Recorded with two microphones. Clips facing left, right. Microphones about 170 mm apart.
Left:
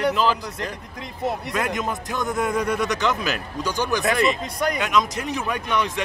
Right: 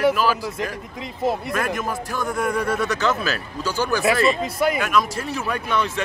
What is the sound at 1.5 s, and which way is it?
A man's voice, 20° left (ahead or behind).